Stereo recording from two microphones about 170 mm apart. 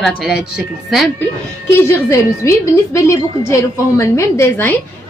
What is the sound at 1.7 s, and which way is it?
A woman's voice, 15° left (ahead or behind).